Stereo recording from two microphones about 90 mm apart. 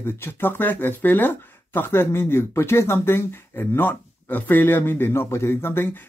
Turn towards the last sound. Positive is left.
turn(degrees=25)  # may be behind; listen again after turning